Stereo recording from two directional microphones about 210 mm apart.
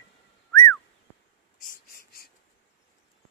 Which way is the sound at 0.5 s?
15° left (ahead or behind).